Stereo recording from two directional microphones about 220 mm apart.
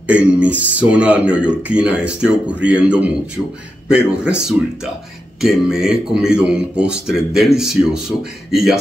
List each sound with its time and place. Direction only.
0.0 s a man's voice: 5° right (ahead or behind)